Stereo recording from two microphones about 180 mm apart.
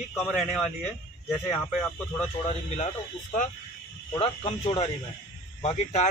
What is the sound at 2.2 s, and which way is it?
Speech, 35° left (ahead or behind).